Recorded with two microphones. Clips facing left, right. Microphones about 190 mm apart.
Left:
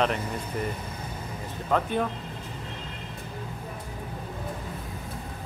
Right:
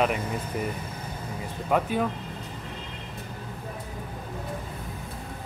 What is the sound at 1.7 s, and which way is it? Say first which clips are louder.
Speech: right 1 dB; 5° right (ahead or behind).